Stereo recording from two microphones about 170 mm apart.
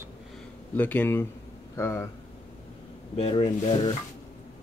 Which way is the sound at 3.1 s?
35° left (ahead or behind).